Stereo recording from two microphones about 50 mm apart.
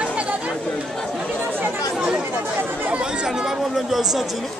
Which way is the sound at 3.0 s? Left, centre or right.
Centre.